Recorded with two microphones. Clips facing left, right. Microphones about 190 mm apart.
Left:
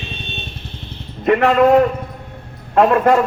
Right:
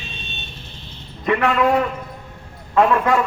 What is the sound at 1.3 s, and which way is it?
A man's voice, 40° left (ahead or behind).